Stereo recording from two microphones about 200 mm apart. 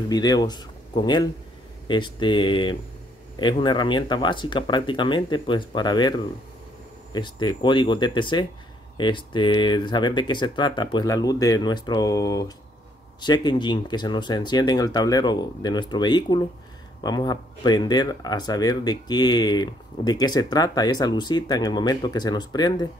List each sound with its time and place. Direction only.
0.1 s speech: 20° left (ahead or behind)